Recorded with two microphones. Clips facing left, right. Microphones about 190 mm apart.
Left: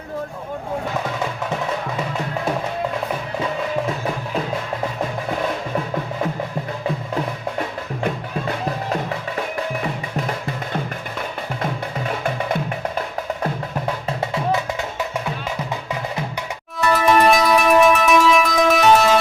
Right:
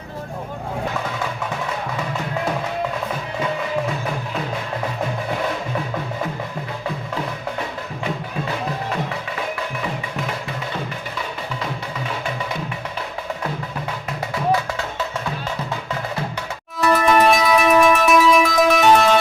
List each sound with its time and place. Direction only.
14.2 s music: 20° left (ahead or behind)
16.8 s music: centre (ahead or behind)